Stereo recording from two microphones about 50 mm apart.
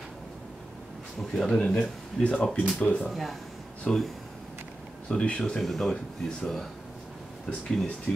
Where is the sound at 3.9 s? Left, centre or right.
Centre.